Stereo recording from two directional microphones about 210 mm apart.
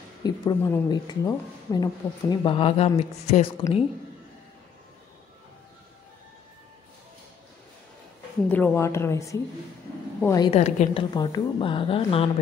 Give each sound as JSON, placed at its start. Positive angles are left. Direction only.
{"t": 0.2, "sound": "a woman's voice", "side_deg": 15}
{"t": 8.5, "sound": "a woman's voice", "side_deg": 10}
{"t": 10.5, "sound": "a woman's voice", "side_deg": 30}